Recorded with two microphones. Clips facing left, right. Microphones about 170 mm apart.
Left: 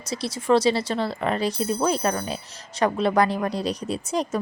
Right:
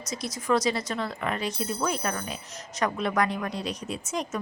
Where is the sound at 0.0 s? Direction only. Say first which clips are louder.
Left 5 dB; 30° left (ahead or behind).